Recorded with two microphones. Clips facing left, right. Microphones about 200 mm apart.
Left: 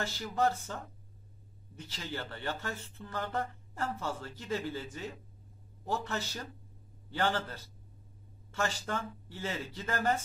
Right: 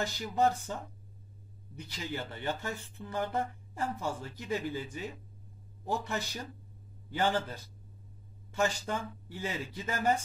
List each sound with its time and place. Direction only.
0.0 s speech: 15° right (ahead or behind)
1.8 s speech: 15° right (ahead or behind)